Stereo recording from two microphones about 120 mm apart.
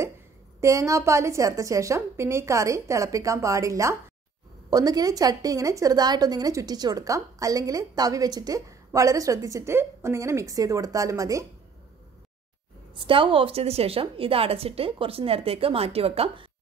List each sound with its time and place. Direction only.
0.6 s a woman's voice: 25° right (ahead or behind)
12.9 s a woman's voice: 45° right (ahead or behind)